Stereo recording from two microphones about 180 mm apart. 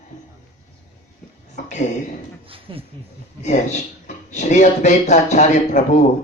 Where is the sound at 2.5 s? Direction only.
30° right (ahead or behind).